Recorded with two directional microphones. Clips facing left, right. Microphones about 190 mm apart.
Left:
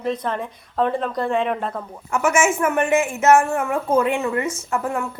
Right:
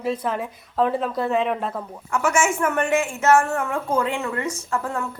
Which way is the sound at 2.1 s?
20° left (ahead or behind).